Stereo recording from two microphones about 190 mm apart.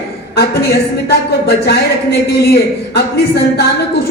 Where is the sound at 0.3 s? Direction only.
60° left (ahead or behind).